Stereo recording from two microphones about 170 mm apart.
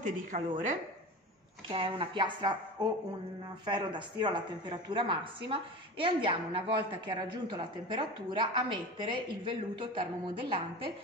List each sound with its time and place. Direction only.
0.0 s a woman's voice: 45° right (ahead or behind)
1.7 s speech: 30° right (ahead or behind)